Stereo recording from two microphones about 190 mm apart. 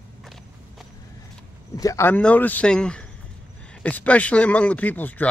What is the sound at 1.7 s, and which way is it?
Speech, 15° left (ahead or behind).